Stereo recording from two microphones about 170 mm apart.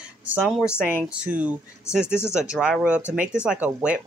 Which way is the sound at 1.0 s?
10° right (ahead or behind).